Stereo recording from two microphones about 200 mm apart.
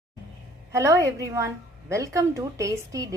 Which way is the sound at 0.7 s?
15° right (ahead or behind).